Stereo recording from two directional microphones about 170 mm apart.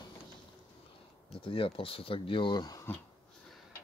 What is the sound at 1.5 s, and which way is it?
Speech, 30° left (ahead or behind).